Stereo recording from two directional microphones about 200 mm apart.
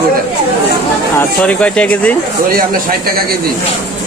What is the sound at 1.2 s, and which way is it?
Speech, 5° left (ahead or behind).